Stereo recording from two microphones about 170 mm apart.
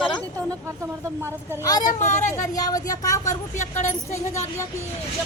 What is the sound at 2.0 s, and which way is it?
Speech, 45° left (ahead or behind).